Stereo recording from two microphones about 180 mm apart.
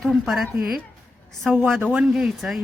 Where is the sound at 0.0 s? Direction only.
Centre (ahead or behind).